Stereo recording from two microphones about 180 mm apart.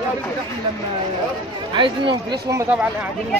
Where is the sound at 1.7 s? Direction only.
25° right (ahead or behind).